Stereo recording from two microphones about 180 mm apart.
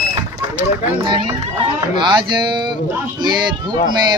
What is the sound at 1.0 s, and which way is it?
Speech, 25° right (ahead or behind).